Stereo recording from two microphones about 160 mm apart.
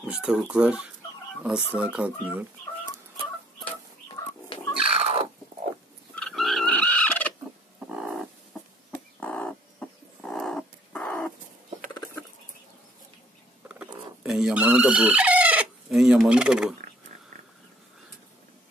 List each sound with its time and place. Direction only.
0.0 s speech: 10° right (ahead or behind)
3.6 s chicken: 30° left (ahead or behind)
4.8 s cat: 40° right (ahead or behind)
6.1 s fowl: 5° left (ahead or behind)
7.8 s a sound: 5° right (ahead or behind)
9.2 s dog: 10° left (ahead or behind)
14.2 s chicken: 5° right (ahead or behind)